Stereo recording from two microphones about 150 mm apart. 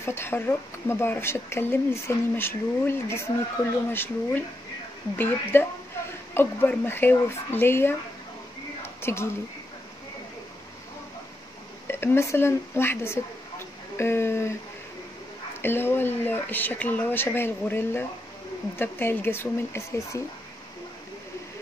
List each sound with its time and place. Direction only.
0.0 s speech: 15° left (ahead or behind)
8.8 s a sound: 15° left (ahead or behind)
11.9 s speech: 15° left (ahead or behind)
15.6 s speech: 15° left (ahead or behind)